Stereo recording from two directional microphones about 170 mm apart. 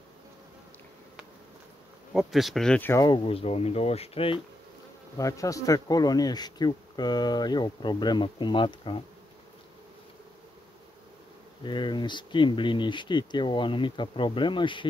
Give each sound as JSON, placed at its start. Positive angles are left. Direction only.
{"t": 2.1, "sound": "speech", "side_deg": 0}
{"t": 5.1, "sound": "speech", "side_deg": 20}
{"t": 11.6, "sound": "speech", "side_deg": 25}